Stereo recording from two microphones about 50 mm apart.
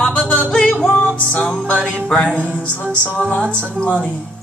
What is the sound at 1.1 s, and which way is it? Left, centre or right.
Speech, left.